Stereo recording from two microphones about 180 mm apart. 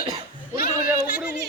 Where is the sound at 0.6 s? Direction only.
55° left (ahead or behind).